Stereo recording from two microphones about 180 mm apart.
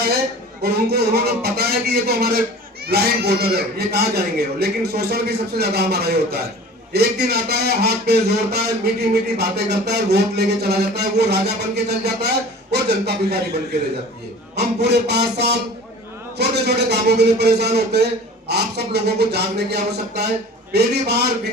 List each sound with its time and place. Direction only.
0.6 s a man's voice: 60° right (ahead or behind)